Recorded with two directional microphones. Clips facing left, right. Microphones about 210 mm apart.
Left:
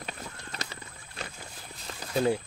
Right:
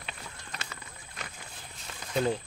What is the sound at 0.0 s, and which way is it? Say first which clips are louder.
Clip-clop: left 4 dB; 35° left (ahead or behind).